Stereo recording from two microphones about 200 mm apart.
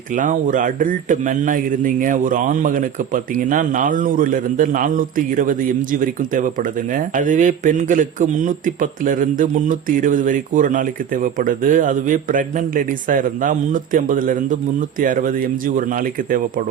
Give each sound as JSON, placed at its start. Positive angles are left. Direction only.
{"t": 0.1, "sound": "a man's voice", "side_deg": -40}